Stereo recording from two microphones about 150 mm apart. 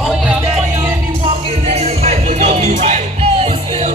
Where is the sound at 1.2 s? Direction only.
45° right (ahead or behind).